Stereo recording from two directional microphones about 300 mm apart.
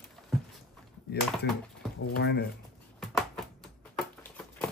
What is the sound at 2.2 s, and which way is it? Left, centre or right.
Speech, left.